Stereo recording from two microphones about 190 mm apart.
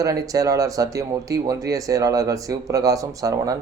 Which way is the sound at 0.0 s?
15° right (ahead or behind).